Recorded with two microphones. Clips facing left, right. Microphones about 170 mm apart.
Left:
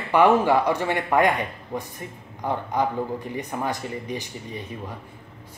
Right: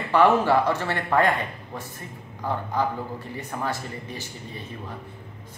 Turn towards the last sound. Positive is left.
turn(degrees=15)  # may be behind; listen again after turning